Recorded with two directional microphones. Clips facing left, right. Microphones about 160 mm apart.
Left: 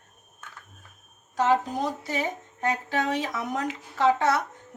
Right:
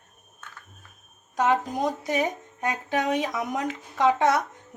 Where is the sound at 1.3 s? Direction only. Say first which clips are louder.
Even; 15° right (ahead or behind).